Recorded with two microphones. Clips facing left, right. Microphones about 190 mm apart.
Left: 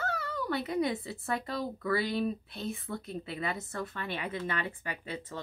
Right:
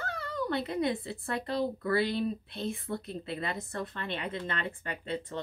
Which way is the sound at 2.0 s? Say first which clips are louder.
Even; centre (ahead or behind).